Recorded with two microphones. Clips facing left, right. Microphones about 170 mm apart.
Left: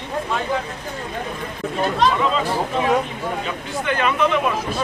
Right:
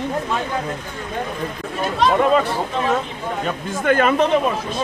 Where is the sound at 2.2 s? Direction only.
55° right (ahead or behind).